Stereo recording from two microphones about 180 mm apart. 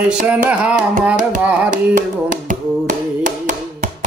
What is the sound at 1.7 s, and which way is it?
Tap, 45° right (ahead or behind).